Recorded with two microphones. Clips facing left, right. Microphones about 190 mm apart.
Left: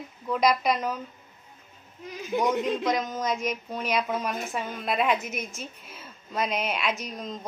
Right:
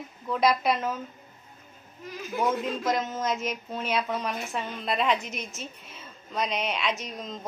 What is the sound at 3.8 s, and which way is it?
Speech, 10° left (ahead or behind).